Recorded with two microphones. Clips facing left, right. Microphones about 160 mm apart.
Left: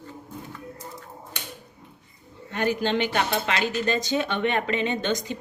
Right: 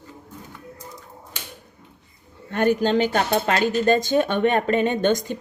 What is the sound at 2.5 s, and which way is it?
Speech, 50° right (ahead or behind).